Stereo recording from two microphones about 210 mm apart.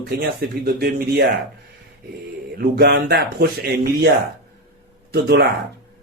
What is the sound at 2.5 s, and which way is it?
A man's voice, 50° right (ahead or behind).